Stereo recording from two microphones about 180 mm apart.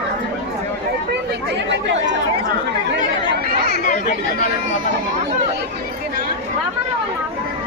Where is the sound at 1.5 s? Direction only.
80° right.